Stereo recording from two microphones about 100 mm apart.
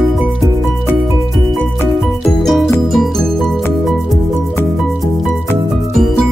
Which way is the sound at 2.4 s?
Centre (ahead or behind).